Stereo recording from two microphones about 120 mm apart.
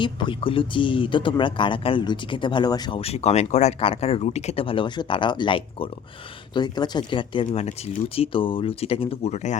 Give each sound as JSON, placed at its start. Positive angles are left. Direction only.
{"t": 0.0, "sound": "speech", "side_deg": 45}
{"t": 3.0, "sound": "speech", "side_deg": 60}